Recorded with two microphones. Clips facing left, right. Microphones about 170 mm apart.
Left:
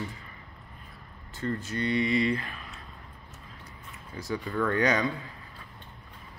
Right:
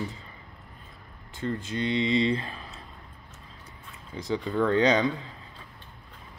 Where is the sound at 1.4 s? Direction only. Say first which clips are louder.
Right 1 dB; 15° right (ahead or behind).